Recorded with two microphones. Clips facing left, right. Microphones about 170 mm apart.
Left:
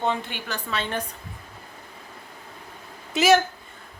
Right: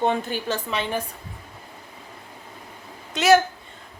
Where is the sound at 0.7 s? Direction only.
10° right (ahead or behind).